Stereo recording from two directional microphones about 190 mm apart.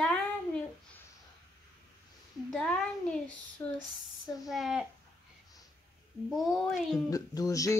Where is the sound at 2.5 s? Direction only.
5° left (ahead or behind).